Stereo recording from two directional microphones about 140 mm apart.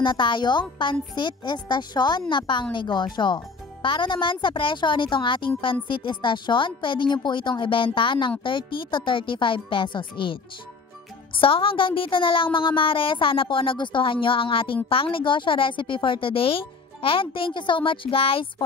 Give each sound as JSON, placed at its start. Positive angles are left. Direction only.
{"t": 0.0, "sound": "speech", "side_deg": 35}